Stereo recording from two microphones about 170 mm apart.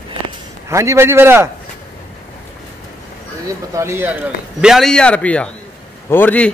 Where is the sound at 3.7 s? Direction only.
15° right (ahead or behind).